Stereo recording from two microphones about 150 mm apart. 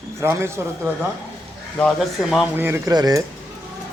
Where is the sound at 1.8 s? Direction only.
Centre (ahead or behind).